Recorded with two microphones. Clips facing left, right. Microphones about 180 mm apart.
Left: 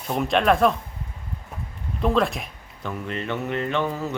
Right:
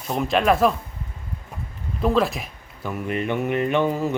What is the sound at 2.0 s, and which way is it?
Speech, centre (ahead or behind).